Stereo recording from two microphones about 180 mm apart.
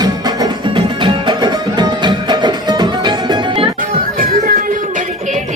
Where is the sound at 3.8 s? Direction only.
50° right (ahead or behind).